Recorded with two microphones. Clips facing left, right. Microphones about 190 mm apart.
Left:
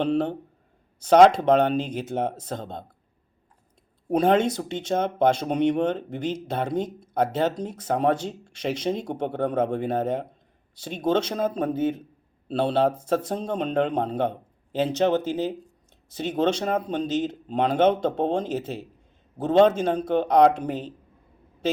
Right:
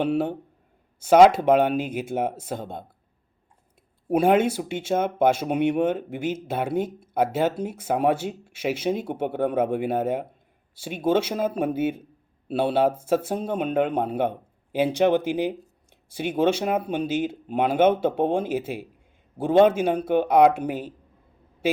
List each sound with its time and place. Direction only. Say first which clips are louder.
0.0 s speech: even; 5° right (ahead or behind)
4.1 s speech: right 1 dB; 10° right (ahead or behind)